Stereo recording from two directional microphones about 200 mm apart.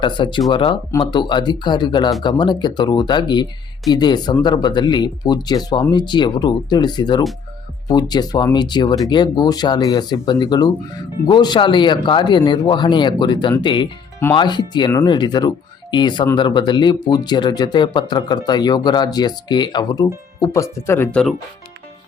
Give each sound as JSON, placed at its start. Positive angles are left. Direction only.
{"t": 0.0, "sound": "speech", "side_deg": 25}